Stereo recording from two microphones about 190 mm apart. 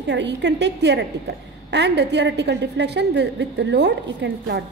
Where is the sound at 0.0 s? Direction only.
65° right (ahead or behind).